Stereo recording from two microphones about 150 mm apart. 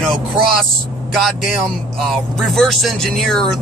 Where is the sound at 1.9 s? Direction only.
Centre (ahead or behind).